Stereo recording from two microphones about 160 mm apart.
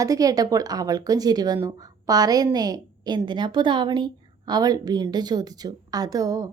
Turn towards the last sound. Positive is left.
turn(degrees=-20)  # may be behind; listen again after turning